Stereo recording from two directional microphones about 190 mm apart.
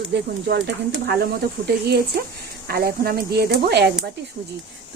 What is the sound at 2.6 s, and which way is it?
Speech, 55° right (ahead or behind).